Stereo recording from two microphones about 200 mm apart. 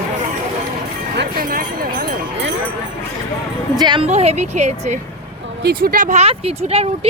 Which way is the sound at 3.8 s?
25° right (ahead or behind).